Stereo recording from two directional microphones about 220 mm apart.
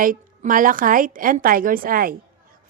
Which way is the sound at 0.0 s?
40° right (ahead or behind).